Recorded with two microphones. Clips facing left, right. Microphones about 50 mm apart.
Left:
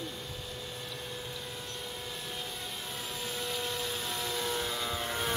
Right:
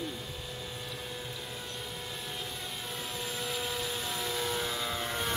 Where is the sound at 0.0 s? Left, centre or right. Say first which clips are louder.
Right 2 dB; centre.